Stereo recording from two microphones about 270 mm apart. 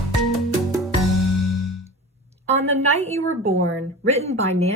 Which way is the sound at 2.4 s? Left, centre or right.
Right.